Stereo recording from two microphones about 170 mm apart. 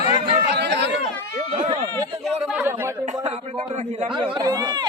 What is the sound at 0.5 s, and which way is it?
Chatter, 85° right.